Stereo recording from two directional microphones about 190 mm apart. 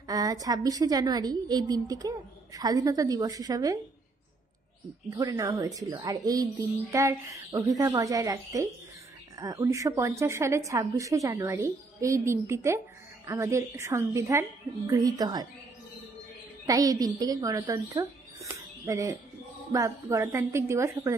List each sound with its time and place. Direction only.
0.0 s a woman's voice: 20° right (ahead or behind)
5.1 s a woman's voice: 20° right (ahead or behind)
16.6 s a woman's voice: 20° right (ahead or behind)